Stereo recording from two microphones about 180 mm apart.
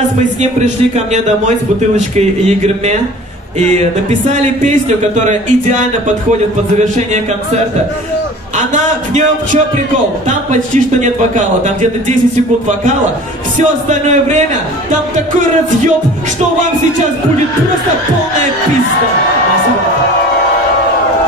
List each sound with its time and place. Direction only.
0.4 s a man's voice: 40° right (ahead or behind)
8.5 s a man's voice: 40° right (ahead or behind)
13.6 s a man's voice: 40° right (ahead or behind)